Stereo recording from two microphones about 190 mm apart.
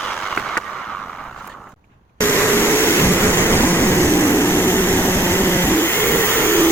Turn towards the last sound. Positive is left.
turn(degrees=10)  # may be behind; listen again after turning